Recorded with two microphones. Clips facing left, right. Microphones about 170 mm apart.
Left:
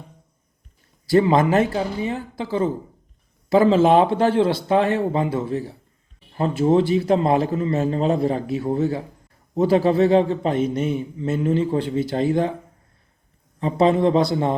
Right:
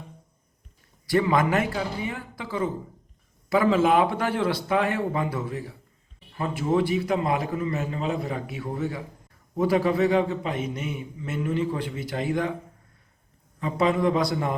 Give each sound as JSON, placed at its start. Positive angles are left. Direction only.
{"t": 1.0, "sound": "a man's voice", "side_deg": 30}
{"t": 13.6, "sound": "a man's voice", "side_deg": 30}